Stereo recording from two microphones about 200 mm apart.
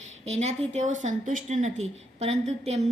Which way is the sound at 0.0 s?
35° right (ahead or behind).